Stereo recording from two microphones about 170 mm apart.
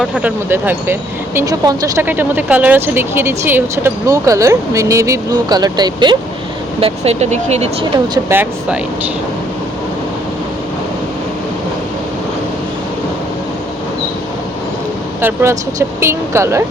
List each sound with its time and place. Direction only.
0.0 s speech: 5° right (ahead or behind); by 6.1 s 25° right (ahead or behind)
6.7 s speech: 35° right (ahead or behind)
7.9 s speech: 25° right (ahead or behind)
8.3 s speech: 10° right (ahead or behind)
15.2 s speech: 15° right (ahead or behind)